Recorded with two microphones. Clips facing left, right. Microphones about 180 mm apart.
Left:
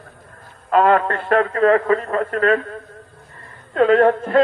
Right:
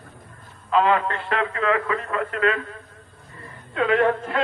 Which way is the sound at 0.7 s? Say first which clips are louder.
Left 5 dB; 50° left (ahead or behind).